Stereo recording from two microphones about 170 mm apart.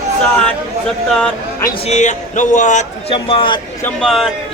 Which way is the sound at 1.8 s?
45° left (ahead or behind).